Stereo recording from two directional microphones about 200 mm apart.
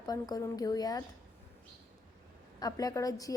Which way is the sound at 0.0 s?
20° left (ahead or behind).